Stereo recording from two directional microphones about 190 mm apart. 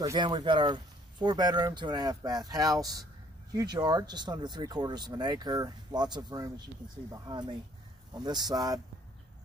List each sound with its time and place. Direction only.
0.0 s speech: 20° right (ahead or behind)
8.2 s speech: 20° right (ahead or behind)